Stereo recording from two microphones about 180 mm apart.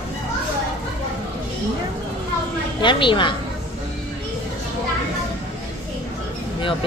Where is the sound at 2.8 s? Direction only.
25° left (ahead or behind).